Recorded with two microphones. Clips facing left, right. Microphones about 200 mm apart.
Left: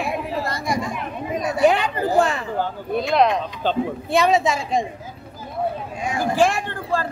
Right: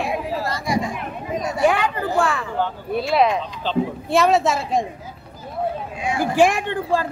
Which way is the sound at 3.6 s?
50° left (ahead or behind).